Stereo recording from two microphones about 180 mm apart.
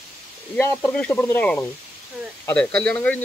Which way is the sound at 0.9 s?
10° left (ahead or behind).